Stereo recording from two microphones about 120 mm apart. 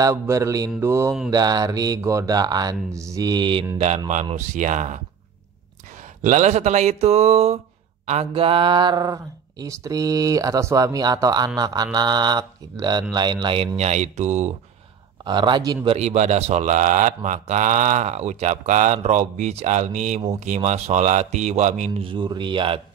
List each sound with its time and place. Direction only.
0.0 s mantra: 25° right (ahead or behind)
1.3 s speech: 35° right (ahead or behind)
3.7 s a man's voice: 70° right (ahead or behind)
4.6 s speech: 90° right
6.2 s a man's voice: 85° right; by 13.7 s 40° right (ahead or behind)
13.7 s a man's voice: 70° right (ahead or behind)
15.2 s speech: 40° right (ahead or behind)
15.9 s speech: 70° right (ahead or behind); by 20.2 s 90° right
20.3 s a man's voice: 80° right
22.0 s speech: 40° right (ahead or behind)